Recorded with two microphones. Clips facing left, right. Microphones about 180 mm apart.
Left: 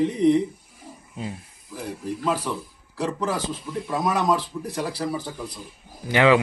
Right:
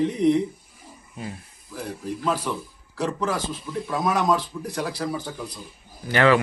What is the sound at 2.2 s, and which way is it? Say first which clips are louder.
Speech: even; centre (ahead or behind).